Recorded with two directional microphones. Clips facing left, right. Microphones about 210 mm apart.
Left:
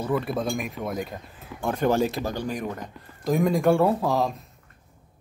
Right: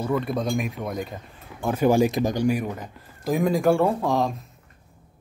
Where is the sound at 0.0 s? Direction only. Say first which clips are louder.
Right 1 dB; 5° left (ahead or behind).